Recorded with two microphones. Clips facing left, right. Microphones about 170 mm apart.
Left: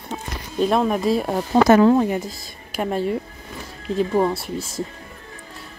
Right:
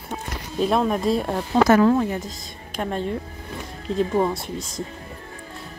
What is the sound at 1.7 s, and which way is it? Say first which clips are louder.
Speech: left 3 dB; 20° left (ahead or behind).